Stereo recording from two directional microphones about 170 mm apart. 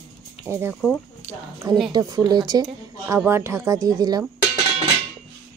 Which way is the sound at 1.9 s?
25° right (ahead or behind).